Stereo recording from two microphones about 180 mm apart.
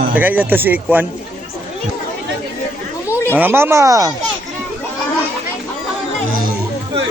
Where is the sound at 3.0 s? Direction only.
15° left (ahead or behind).